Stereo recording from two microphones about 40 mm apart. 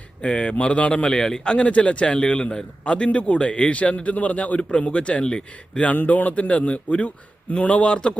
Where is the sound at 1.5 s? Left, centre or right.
Left.